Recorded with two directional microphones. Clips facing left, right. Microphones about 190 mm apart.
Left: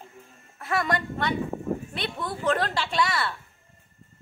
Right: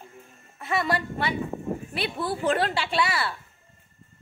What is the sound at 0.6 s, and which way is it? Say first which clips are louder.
A woman's voice: even; centre (ahead or behind).